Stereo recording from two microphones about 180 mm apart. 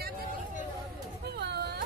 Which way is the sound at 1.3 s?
65° right (ahead or behind).